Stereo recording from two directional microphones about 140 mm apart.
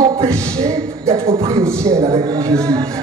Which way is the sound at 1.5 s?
20° right (ahead or behind).